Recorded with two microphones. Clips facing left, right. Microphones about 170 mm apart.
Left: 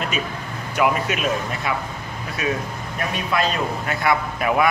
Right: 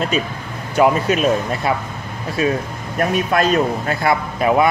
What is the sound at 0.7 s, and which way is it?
A man's voice, 35° right (ahead or behind).